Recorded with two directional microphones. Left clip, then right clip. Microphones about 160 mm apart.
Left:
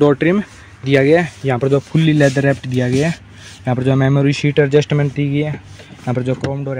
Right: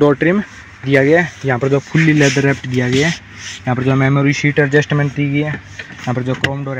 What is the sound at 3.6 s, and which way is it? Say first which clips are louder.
Speech: right 1 dB; 20° left (ahead or behind).